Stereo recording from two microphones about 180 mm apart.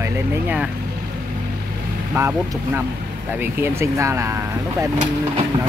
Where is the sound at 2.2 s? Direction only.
15° right (ahead or behind).